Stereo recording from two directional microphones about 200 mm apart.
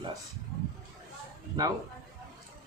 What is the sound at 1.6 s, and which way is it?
Speech, 20° right (ahead or behind).